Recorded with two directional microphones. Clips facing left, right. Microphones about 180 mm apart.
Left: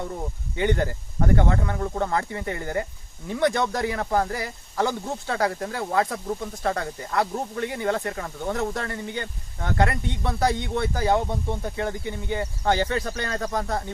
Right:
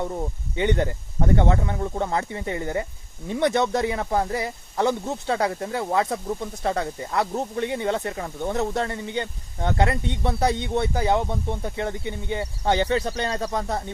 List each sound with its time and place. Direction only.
0.5 s speech: 20° right (ahead or behind)